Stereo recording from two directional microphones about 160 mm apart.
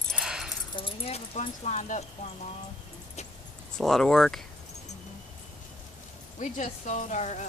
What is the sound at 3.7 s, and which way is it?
Speech, 5° left (ahead or behind).